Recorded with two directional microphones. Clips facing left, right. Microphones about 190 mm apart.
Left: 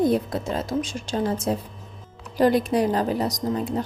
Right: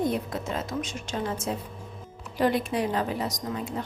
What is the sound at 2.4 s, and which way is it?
A woman's voice, 40° left (ahead or behind).